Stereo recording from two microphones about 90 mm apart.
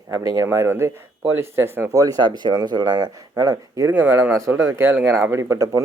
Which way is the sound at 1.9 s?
40° right (ahead or behind).